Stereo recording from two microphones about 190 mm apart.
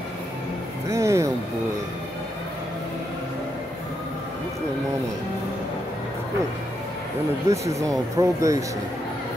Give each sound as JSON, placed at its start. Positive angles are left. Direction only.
{"t": 0.8, "sound": "music", "side_deg": -15}
{"t": 7.4, "sound": "speech", "side_deg": -15}